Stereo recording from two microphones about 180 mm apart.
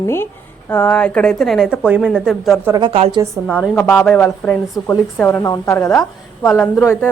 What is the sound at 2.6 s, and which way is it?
Speech, 20° right (ahead or behind).